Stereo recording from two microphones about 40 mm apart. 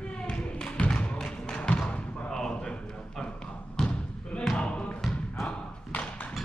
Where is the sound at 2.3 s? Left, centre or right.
Centre.